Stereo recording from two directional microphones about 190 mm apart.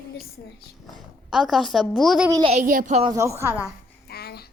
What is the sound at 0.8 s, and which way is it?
A woman's voice, centre (ahead or behind).